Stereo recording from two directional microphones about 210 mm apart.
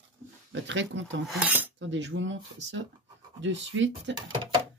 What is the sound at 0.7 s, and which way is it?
Speech, 60° right (ahead or behind).